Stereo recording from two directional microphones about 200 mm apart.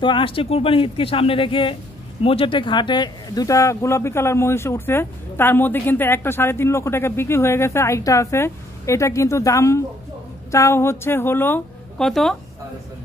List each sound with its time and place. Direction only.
0.0 s speech: 25° left (ahead or behind); by 12.4 s centre (ahead or behind)